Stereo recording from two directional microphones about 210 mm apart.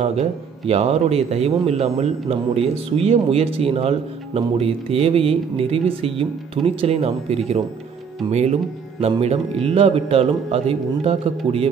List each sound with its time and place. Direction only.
0.0 s a man's voice: 30° right (ahead or behind)